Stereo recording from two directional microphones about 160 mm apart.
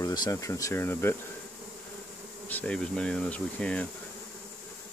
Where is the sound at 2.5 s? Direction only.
10° left (ahead or behind).